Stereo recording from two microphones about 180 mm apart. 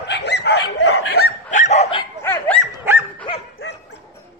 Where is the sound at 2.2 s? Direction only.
10° left (ahead or behind).